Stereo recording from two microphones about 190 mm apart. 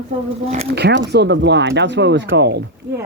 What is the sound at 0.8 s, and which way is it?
Speech, 65° right (ahead or behind).